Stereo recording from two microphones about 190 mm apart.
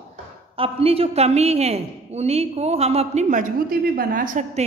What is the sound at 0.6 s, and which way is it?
A woman's voice, 30° right (ahead or behind).